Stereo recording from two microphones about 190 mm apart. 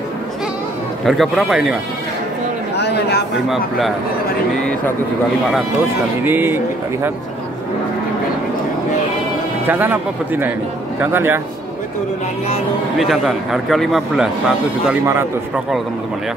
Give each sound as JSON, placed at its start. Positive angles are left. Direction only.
{"t": 1.0, "sound": "a man's voice", "side_deg": 0}
{"t": 2.8, "sound": "chatter", "side_deg": 60}
{"t": 6.2, "sound": "speech", "side_deg": -10}
{"t": 9.7, "sound": "speech", "side_deg": -10}
{"t": 13.0, "sound": "a man's voice", "side_deg": 0}